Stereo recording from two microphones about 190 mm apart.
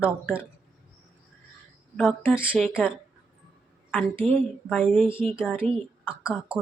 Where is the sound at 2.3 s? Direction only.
5° right (ahead or behind).